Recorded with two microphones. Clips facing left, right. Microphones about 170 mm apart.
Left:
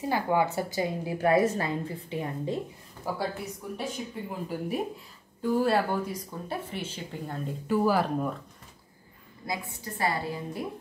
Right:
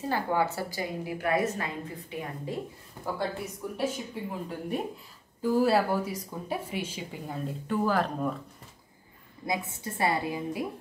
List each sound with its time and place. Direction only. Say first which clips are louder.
0.1 s a woman's voice: left 2 dB; 15° left (ahead or behind)
3.7 s speech: right 3 dB; centre (ahead or behind)
9.5 s a woman's voice: right 3 dB; 20° right (ahead or behind)